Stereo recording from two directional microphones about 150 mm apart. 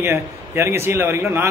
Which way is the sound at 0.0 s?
15° right (ahead or behind).